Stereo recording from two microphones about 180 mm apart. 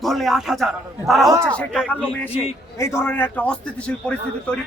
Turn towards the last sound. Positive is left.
turn(degrees=5)  # may be behind; listen again after turning